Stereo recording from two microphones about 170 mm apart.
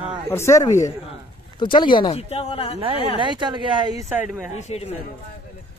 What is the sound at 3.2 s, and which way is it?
Speech, 25° right (ahead or behind).